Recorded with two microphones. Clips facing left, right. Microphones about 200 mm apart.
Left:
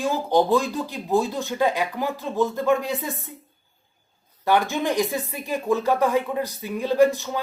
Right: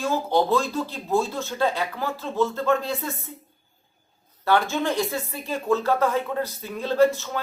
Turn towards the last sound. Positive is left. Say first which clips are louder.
# left 1 dB
turn(degrees=15)  # may be behind; listen again after turning